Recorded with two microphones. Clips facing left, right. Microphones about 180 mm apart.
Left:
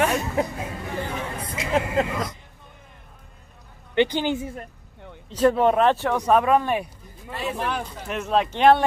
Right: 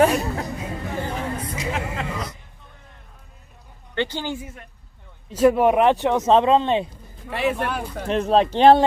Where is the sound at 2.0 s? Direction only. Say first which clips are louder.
Left 7 dB; 40° left (ahead or behind).